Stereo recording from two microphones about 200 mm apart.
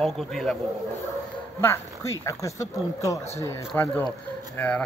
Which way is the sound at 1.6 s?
15° left (ahead or behind).